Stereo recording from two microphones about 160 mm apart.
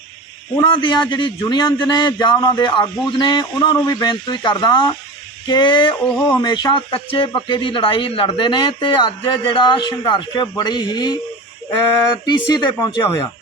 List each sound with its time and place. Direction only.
0.5 s speech: 30° left (ahead or behind)
12.2 s speech: 25° left (ahead or behind)